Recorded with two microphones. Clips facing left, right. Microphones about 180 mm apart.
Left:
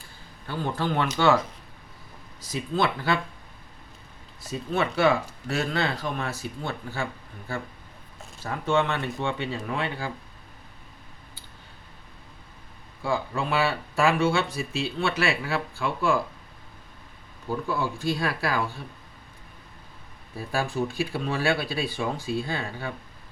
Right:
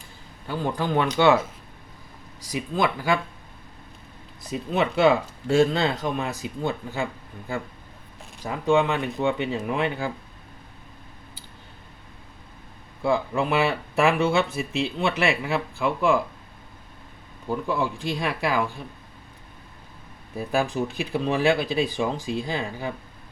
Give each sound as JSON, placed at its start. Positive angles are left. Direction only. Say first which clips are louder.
{"t": 0.4, "sound": "speech", "louder": "right 2 dB", "side_deg": -15}
{"t": 2.5, "sound": "speech", "louder": "right 1 dB", "side_deg": -15}
{"t": 4.4, "sound": "speech", "louder": "right 2 dB", "side_deg": -20}
{"t": 13.0, "sound": "speech", "louder": "right 5 dB", "side_deg": -20}
{"t": 17.7, "sound": "speech", "louder": "even", "side_deg": -15}
{"t": 20.3, "sound": "speech", "louder": "right 4 dB", "side_deg": -20}